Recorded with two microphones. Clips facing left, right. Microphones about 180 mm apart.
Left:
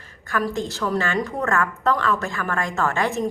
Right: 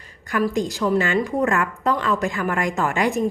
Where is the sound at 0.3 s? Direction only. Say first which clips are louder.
Right 3 dB; 15° right (ahead or behind).